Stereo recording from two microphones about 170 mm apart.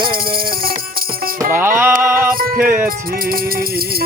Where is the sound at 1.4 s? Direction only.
15° right (ahead or behind).